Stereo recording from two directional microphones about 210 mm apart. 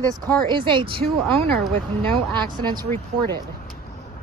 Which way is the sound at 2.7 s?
20° right (ahead or behind).